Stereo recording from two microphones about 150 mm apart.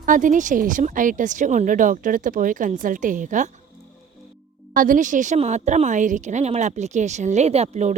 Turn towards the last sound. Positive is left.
turn(degrees=-50)  # may be behind; listen again after turning